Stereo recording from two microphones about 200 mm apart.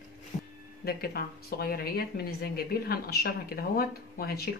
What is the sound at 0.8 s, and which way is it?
Speech, 50° left (ahead or behind).